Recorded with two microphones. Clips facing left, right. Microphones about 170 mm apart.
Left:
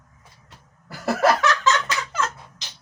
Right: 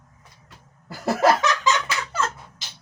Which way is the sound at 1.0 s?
15° right (ahead or behind).